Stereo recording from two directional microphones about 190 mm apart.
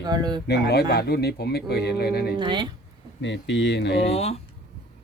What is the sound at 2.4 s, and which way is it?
Speech, 25° right (ahead or behind).